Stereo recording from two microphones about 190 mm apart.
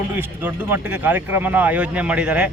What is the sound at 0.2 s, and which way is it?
Speech, 10° right (ahead or behind).